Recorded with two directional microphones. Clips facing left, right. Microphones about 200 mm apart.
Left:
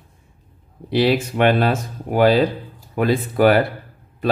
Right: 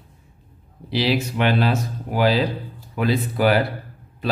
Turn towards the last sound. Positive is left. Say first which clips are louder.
# left 4 dB
turn(degrees=50)  # may be behind; listen again after turning